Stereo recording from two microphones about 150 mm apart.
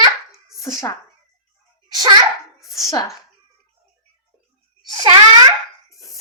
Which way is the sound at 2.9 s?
20° left (ahead or behind).